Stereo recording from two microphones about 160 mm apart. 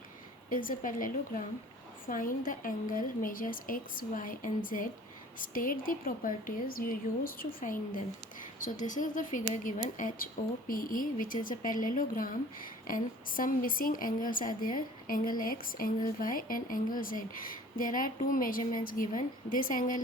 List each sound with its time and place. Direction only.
0.5 s a woman's voice: 60° left (ahead or behind)